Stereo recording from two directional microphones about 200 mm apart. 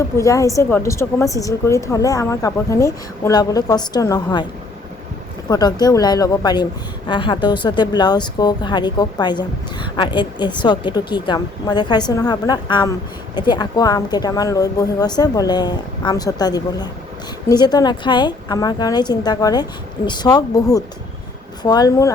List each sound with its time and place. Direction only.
0.0 s a woman's voice: 15° left (ahead or behind)
5.5 s speech: 20° left (ahead or behind)